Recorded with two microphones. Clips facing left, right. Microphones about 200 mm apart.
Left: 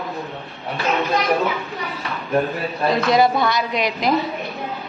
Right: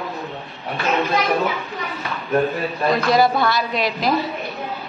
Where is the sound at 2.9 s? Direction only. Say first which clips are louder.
Even; 20° left (ahead or behind).